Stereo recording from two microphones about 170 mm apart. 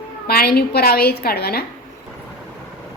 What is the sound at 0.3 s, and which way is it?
A woman's voice, 65° left (ahead or behind).